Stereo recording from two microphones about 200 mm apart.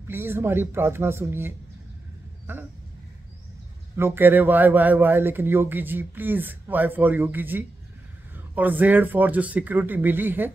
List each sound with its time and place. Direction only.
0.1 s speech: 10° right (ahead or behind)
3.9 s speech: 10° right (ahead or behind)